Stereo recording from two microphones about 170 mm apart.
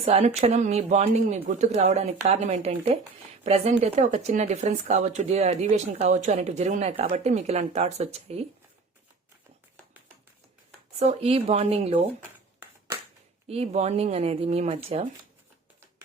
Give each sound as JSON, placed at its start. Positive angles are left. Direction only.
{"t": 0.0, "sound": "speech", "side_deg": -40}
{"t": 10.9, "sound": "speech", "side_deg": -40}
{"t": 13.5, "sound": "speech", "side_deg": -40}